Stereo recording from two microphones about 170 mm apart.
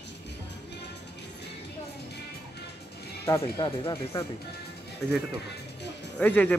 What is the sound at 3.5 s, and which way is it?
Speech, 30° left (ahead or behind).